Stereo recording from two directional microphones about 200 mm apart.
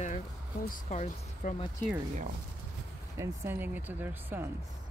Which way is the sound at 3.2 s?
15° right (ahead or behind).